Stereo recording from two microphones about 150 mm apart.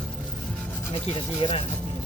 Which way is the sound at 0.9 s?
35° left (ahead or behind).